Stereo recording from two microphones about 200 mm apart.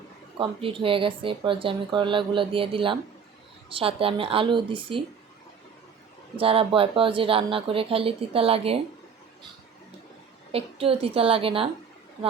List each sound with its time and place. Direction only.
0.3 s speech: 25° right (ahead or behind)
6.4 s speech: 30° right (ahead or behind)
10.5 s speech: 30° right (ahead or behind)